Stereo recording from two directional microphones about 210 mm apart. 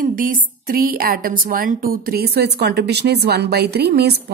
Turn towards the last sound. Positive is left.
turn(degrees=-50)  # may be behind; listen again after turning